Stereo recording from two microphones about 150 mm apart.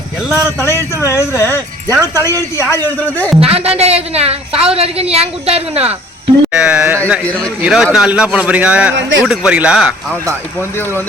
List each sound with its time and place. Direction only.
0.6 s speech: 15° left (ahead or behind)
3.4 s a woman's voice: 40° right (ahead or behind)
6.5 s a man's voice: 10° right (ahead or behind)